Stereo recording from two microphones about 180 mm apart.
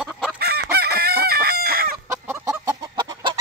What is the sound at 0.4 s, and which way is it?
Chicken, 60° right (ahead or behind).